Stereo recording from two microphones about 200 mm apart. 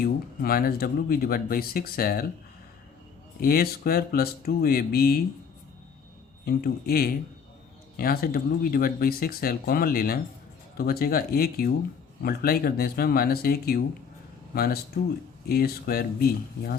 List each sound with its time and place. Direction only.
0.0 s speech: 50° left (ahead or behind)
3.4 s speech: 50° left (ahead or behind)
6.4 s speech: 50° left (ahead or behind)